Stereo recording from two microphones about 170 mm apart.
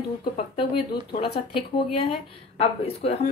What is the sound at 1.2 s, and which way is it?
Speech, 30° left (ahead or behind).